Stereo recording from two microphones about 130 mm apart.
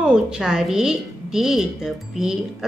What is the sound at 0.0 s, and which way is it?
A woman's voice, 5° right (ahead or behind).